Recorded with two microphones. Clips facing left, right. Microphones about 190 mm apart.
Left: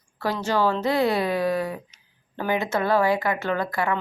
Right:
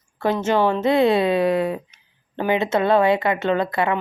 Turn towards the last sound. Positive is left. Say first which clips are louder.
# right 4 dB
turn(degrees=-25)  # may be behind; listen again after turning